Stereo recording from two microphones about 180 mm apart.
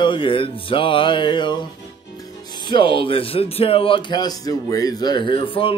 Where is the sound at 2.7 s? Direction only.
25° left (ahead or behind).